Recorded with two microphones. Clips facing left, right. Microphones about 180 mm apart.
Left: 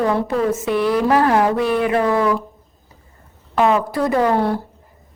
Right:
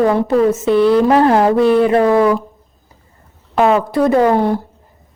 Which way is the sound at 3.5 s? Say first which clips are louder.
Right 4 dB; 25° right (ahead or behind).